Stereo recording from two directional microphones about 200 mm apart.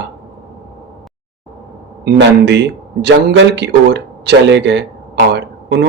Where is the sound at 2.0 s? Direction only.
60° right (ahead or behind).